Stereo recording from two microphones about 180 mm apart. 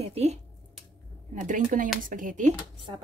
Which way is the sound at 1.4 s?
45° right (ahead or behind).